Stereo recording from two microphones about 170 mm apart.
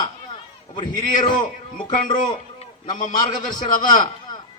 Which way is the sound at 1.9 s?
50° left (ahead or behind).